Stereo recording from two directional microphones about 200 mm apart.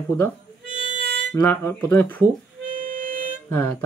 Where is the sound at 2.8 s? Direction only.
45° right (ahead or behind).